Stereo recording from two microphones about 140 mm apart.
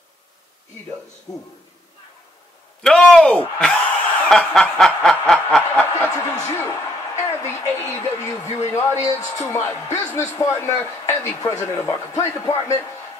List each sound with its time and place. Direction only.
2.8 s a sound: 5° left (ahead or behind)
4.3 s snicker: 5° left (ahead or behind)
6.1 s a woman's voice: 20° left (ahead or behind)